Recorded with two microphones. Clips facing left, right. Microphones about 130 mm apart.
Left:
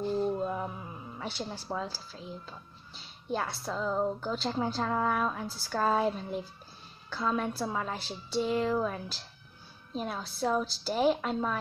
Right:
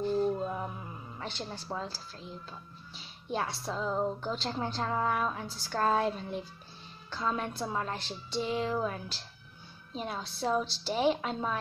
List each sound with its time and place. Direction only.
0.2 s music: centre (ahead or behind)
3.0 s a woman's voice: centre (ahead or behind)